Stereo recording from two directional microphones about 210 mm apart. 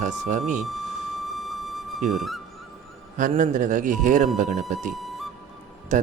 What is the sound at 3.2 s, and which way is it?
A man's voice, 35° right (ahead or behind).